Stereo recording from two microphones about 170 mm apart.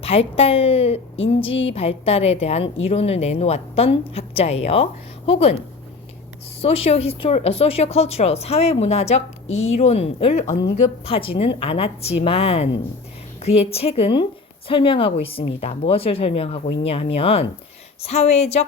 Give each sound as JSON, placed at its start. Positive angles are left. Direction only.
{"t": 0.0, "sound": "a woman's voice", "side_deg": 35}
{"t": 6.6, "sound": "a woman's voice", "side_deg": 35}